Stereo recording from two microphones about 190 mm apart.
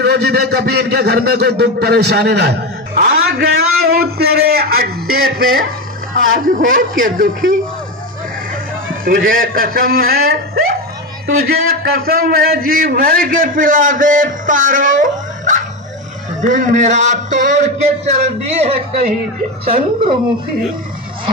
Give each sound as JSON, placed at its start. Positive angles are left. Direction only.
{"t": 0.0, "sound": "a man's voice", "side_deg": -60}
{"t": 9.0, "sound": "a man's voice", "side_deg": -50}